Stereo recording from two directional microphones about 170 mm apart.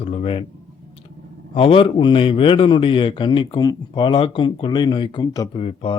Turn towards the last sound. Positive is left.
turn(degrees=35)  # may be behind; listen again after turning